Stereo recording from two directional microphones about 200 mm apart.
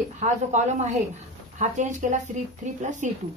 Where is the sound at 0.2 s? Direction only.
35° right (ahead or behind).